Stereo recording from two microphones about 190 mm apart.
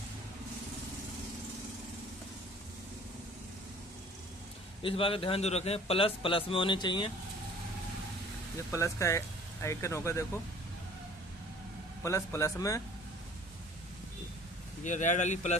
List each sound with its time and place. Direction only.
4.8 s a man's voice: 30° left (ahead or behind)
8.7 s speech: 15° left (ahead or behind)
12.0 s speech: 15° left (ahead or behind)
14.8 s speech: 40° left (ahead or behind)